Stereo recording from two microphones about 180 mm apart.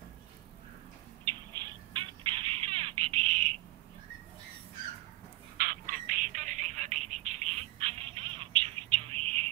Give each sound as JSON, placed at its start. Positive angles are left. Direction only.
{"t": 2.0, "sound": "bird", "side_deg": -30}
{"t": 5.6, "sound": "telephone", "side_deg": -50}